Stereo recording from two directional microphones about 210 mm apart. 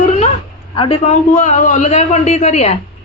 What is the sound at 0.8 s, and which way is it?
A man's voice, 30° left (ahead or behind).